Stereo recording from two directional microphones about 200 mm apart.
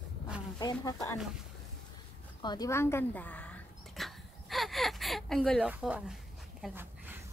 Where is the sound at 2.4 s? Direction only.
20° left (ahead or behind).